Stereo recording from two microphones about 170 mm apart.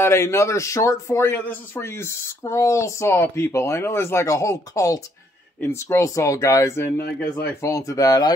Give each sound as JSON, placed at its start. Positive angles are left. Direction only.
{"t": 0.0, "sound": "speech", "side_deg": 15}